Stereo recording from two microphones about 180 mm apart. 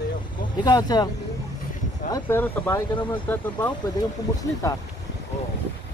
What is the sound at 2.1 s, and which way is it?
Speech, 10° left (ahead or behind).